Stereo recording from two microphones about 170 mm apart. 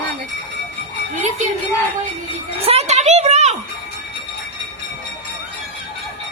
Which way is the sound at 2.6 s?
40° right (ahead or behind).